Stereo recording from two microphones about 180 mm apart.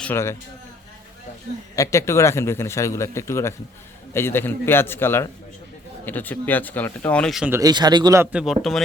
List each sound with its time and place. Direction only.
0.0 s a man's voice: 15° left (ahead or behind)
1.7 s a man's voice: 15° left (ahead or behind); by 7.5 s centre (ahead or behind)
7.5 s speech: 20° right (ahead or behind); by 8.8 s centre (ahead or behind)